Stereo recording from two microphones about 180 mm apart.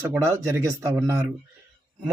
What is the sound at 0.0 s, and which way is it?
Speech, 15° right (ahead or behind).